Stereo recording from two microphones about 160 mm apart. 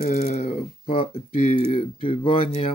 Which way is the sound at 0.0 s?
50° left (ahead or behind).